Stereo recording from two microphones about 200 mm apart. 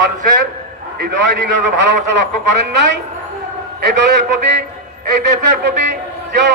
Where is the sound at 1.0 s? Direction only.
60° right (ahead or behind).